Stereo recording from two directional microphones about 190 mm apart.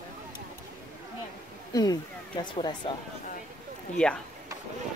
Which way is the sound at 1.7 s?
20° left (ahead or behind).